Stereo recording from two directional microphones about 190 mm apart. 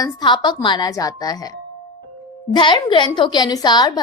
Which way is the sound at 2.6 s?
25° left (ahead or behind).